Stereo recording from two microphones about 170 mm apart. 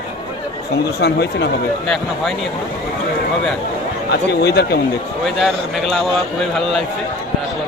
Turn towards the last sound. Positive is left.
turn(degrees=0)  # may be behind; listen again after turning